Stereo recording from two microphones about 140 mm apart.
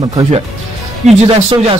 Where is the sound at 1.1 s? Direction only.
50° right (ahead or behind).